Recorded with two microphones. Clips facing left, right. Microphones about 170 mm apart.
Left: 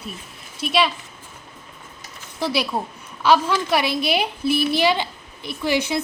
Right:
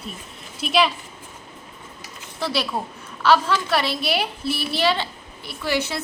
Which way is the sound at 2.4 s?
15° left (ahead or behind).